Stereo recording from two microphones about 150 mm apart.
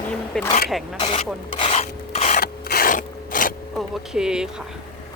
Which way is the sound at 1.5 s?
40° left (ahead or behind).